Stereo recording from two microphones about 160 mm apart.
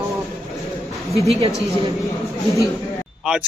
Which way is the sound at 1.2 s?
40° right (ahead or behind).